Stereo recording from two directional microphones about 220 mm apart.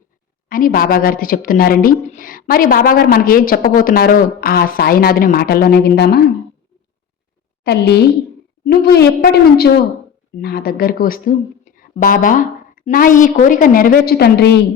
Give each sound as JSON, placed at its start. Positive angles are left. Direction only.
{"t": 0.4, "sound": "a woman's voice", "side_deg": 40}
{"t": 7.6, "sound": "a woman's voice", "side_deg": 50}